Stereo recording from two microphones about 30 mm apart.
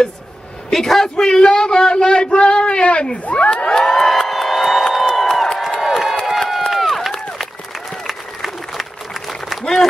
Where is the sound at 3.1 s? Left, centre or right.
Left.